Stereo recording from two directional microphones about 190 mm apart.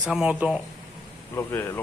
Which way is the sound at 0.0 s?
5° right (ahead or behind).